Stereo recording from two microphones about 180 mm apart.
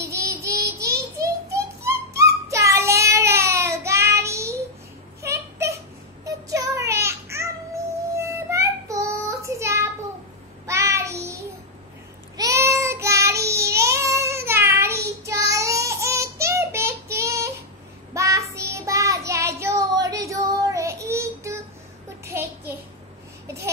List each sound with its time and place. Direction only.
0.0 s child singing: 15° right (ahead or behind)
5.2 s a sound: 15° right (ahead or behind)
6.2 s child singing: 15° right (ahead or behind)
12.4 s child singing: 15° right (ahead or behind)
23.4 s babbling: 15° right (ahead or behind)